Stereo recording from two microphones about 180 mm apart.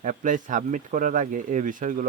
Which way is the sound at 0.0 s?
45° right (ahead or behind).